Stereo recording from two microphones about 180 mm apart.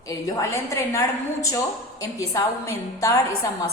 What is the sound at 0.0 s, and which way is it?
A woman's voice, 20° left (ahead or behind).